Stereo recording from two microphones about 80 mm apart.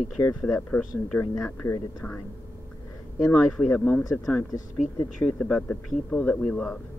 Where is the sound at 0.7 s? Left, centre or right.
Centre.